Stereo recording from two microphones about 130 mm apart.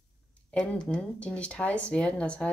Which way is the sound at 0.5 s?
5° left (ahead or behind).